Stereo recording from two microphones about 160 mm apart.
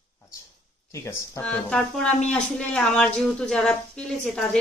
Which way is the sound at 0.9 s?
20° left (ahead or behind).